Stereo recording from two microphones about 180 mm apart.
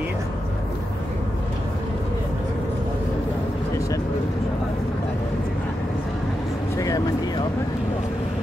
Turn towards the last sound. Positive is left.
turn(degrees=20)  # may be behind; listen again after turning